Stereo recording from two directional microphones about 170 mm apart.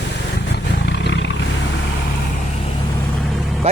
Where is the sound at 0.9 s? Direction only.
90° left.